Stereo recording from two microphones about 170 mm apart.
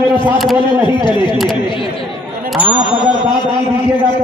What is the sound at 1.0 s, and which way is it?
Speech, 25° left (ahead or behind).